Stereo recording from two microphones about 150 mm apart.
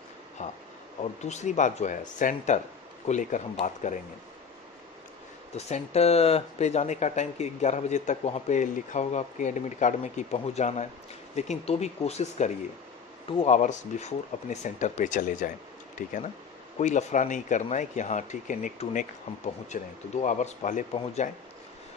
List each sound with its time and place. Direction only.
0.4 s speech: 55° left (ahead or behind)
5.5 s speech: 45° left (ahead or behind)
16.7 s speech: 55° left (ahead or behind)